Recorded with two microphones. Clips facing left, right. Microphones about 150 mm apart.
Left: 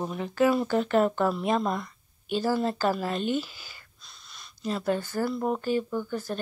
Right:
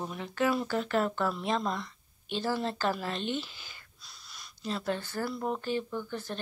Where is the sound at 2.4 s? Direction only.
10° left (ahead or behind).